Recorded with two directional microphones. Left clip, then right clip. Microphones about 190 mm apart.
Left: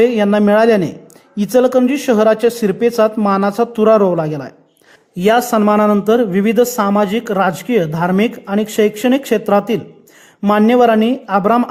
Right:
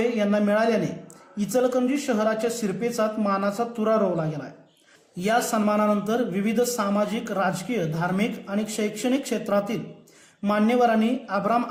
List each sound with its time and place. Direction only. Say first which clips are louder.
0.0 s speech: left 11 dB; 45° left (ahead or behind)